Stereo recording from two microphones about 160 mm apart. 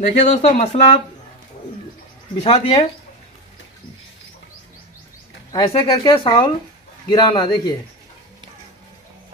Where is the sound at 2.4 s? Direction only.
35° left (ahead or behind).